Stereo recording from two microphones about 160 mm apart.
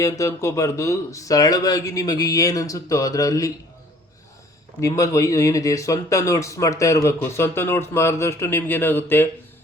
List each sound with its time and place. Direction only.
0.0 s speech: 20° left (ahead or behind)
4.8 s speech: 20° left (ahead or behind)